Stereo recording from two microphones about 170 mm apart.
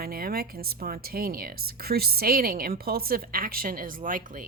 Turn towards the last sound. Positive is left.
turn(degrees=-55)  # may be behind; listen again after turning